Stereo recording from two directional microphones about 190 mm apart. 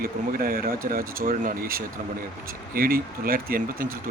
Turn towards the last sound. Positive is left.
turn(degrees=-50)  # may be behind; listen again after turning